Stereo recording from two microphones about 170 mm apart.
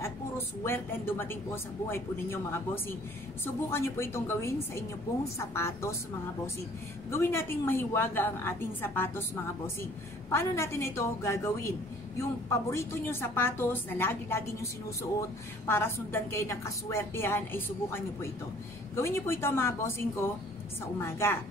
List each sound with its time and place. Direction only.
0.7 s a woman's voice: 15° left (ahead or behind)
7.1 s a woman's voice: 15° left (ahead or behind)
10.3 s a woman's voice: 15° left (ahead or behind)